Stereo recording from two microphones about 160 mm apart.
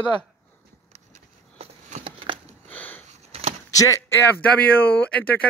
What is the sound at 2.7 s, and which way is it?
Sniff, 10° left (ahead or behind).